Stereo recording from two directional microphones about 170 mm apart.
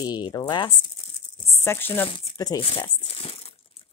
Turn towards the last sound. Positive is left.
turn(degrees=35)  # may be behind; listen again after turning